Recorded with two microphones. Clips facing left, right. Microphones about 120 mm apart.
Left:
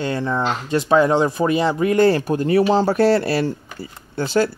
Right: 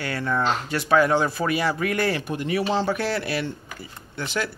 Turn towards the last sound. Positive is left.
turn(degrees=30)  # may be behind; listen again after turning